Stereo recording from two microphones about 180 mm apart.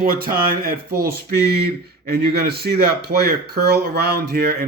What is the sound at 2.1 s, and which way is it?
Speech, 60° right (ahead or behind).